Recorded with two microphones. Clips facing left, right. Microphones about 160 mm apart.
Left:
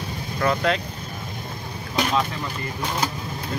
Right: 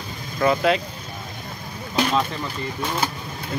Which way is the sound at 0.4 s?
5° right (ahead or behind).